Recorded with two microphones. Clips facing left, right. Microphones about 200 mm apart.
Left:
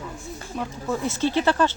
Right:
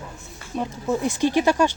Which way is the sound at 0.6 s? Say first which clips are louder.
Right 3 dB; 15° right (ahead or behind).